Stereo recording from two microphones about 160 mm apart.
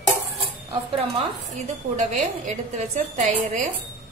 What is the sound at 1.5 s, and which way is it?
A woman's voice, 45° right (ahead or behind).